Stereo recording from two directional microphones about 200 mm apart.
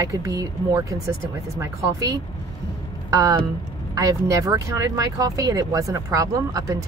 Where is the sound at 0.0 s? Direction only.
15° right (ahead or behind).